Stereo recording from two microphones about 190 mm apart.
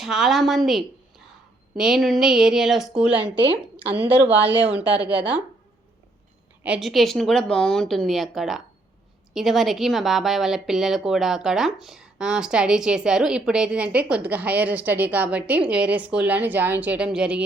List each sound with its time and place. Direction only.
0.0 s a woman's voice: centre (ahead or behind)
3.3 s a woman's voice: 25° right (ahead or behind)
4.4 s a woman's voice: 10° right (ahead or behind)
6.6 s speech: 5° right (ahead or behind)